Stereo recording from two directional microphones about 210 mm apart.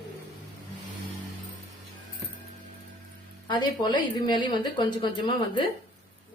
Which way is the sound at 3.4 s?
20° left (ahead or behind).